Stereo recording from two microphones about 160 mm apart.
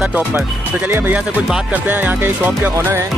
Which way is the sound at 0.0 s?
10° right (ahead or behind).